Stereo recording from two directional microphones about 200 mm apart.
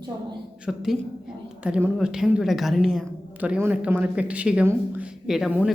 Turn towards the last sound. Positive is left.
turn(degrees=-5)  # may be behind; listen again after turning